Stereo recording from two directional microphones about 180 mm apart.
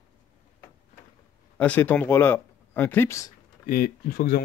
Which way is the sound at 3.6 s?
55° left (ahead or behind).